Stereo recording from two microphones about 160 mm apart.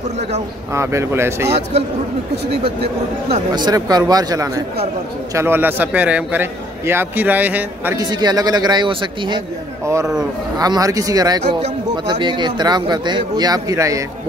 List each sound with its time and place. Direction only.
0.7 s a man's voice: 15° right (ahead or behind)
2.6 s speech: 35° right (ahead or behind)
3.6 s a man's voice: 25° right (ahead or behind)
8.0 s speech: 25° right (ahead or behind)
10.6 s speech: 20° right (ahead or behind)